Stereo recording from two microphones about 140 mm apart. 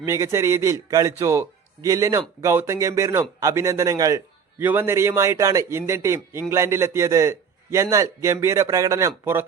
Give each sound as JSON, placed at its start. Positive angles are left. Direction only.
{"t": 0.0, "sound": "a man's voice", "side_deg": -20}
{"t": 4.6, "sound": "a man's voice", "side_deg": -15}